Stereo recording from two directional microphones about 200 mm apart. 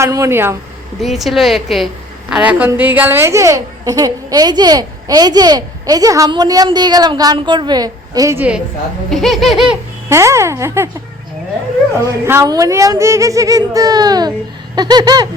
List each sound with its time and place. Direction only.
0.0 s a child's voice: 15° right (ahead or behind)
0.9 s a woman's voice: centre (ahead or behind)
10.1 s a child's voice: 15° right (ahead or behind)
12.2 s a child's voice: 15° right (ahead or behind)
14.8 s a sound: 20° right (ahead or behind)